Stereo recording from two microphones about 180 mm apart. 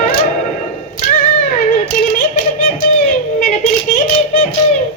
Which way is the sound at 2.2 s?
45° left (ahead or behind).